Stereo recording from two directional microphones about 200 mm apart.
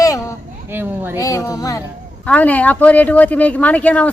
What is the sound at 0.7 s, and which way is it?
Speech, 10° right (ahead or behind).